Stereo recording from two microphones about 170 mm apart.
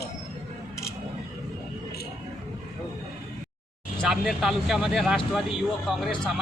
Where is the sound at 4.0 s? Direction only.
Centre (ahead or behind).